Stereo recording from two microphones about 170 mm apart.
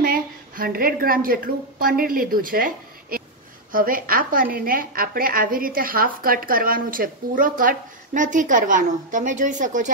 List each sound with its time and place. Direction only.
0.0 s a woman's voice: 60° right (ahead or behind)